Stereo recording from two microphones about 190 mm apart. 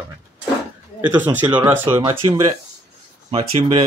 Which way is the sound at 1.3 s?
10° right (ahead or behind).